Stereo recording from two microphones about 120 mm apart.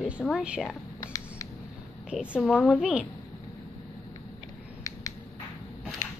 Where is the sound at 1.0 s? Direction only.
30° left (ahead or behind).